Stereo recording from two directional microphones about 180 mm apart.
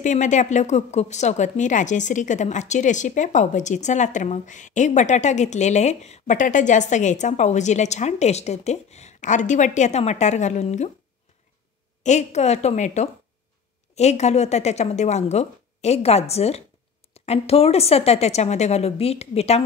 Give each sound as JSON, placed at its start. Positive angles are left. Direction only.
{"t": 0.0, "sound": "a woman's voice", "side_deg": 45}
{"t": 12.0, "sound": "a woman's voice", "side_deg": 40}